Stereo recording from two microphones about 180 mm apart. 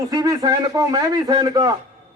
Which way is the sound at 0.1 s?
20° right (ahead or behind).